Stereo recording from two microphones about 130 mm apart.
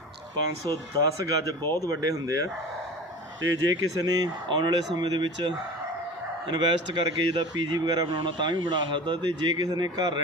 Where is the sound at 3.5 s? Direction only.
30° right (ahead or behind).